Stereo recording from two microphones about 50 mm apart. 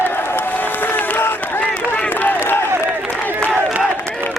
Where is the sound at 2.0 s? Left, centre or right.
Left.